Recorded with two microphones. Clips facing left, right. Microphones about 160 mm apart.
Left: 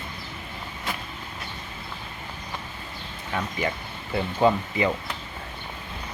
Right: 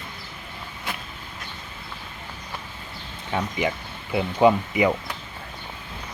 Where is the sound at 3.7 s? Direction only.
10° right (ahead or behind).